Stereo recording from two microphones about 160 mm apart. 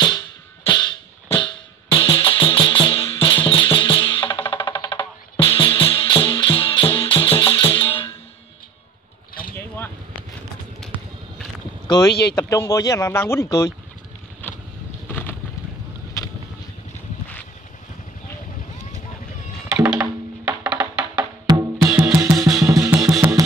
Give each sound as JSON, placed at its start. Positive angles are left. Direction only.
{"t": 0.7, "sound": "music", "side_deg": 25}
{"t": 12.1, "sound": "speech", "side_deg": 90}
{"t": 12.4, "sound": "speech", "side_deg": 20}
{"t": 19.7, "sound": "music", "side_deg": -5}
{"t": 22.7, "sound": "drum", "side_deg": -20}